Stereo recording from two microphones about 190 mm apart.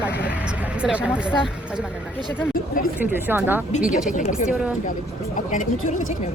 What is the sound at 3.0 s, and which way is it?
Speech, 10° right (ahead or behind).